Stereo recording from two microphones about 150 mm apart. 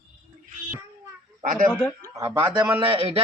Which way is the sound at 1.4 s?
60° right (ahead or behind).